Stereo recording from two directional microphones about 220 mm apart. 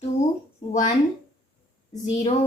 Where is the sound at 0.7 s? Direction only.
35° left (ahead or behind).